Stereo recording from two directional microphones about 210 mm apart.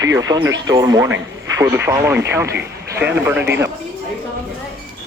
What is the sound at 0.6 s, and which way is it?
Speech, 15° right (ahead or behind).